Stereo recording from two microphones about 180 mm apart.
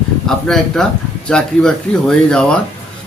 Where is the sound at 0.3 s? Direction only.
5° left (ahead or behind).